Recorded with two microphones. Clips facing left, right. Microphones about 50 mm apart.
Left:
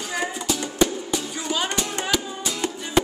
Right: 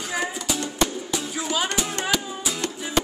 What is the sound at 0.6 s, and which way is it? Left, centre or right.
Music, centre.